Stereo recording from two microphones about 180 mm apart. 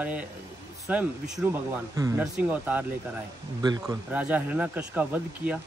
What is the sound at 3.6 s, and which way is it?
Speech, 25° right (ahead or behind).